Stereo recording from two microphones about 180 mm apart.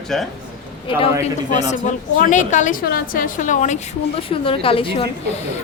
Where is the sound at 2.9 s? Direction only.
55° left (ahead or behind); by 5.1 s 30° left (ahead or behind).